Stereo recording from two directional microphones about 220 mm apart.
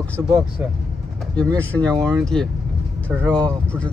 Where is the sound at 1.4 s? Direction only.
5° left (ahead or behind).